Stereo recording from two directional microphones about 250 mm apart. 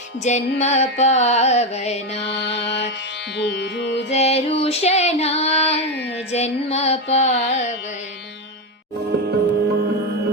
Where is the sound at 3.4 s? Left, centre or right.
Left.